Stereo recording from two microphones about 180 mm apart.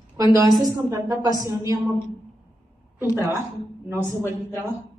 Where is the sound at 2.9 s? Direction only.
15° right (ahead or behind).